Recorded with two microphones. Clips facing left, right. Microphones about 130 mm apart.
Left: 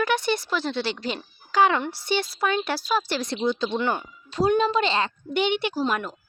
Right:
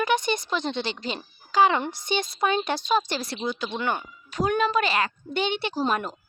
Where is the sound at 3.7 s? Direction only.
20° left (ahead or behind).